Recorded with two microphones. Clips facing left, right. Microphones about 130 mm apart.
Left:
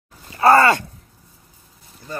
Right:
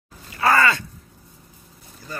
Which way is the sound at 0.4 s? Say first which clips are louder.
Left 5 dB; 45° left (ahead or behind).